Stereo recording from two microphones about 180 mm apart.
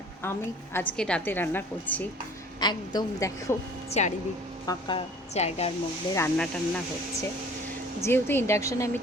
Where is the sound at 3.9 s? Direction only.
40° left (ahead or behind).